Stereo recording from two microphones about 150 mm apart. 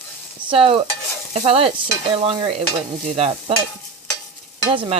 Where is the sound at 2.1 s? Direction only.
35° right (ahead or behind).